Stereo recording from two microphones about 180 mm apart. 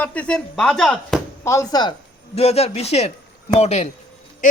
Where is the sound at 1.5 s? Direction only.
20° left (ahead or behind).